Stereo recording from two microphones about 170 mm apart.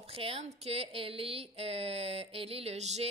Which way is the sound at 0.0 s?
35° right (ahead or behind).